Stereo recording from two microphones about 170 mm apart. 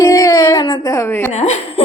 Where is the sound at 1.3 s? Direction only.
40° left (ahead or behind).